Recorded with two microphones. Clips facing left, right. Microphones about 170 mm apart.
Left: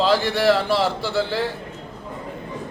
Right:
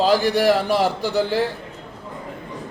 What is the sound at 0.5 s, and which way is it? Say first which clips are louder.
Speech: right 1 dB; 45° right (ahead or behind).